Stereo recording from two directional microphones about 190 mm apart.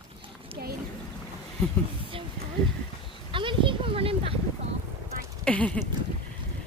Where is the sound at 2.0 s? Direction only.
30° right (ahead or behind).